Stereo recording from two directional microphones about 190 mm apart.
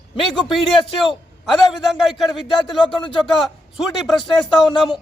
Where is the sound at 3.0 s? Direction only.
25° left (ahead or behind).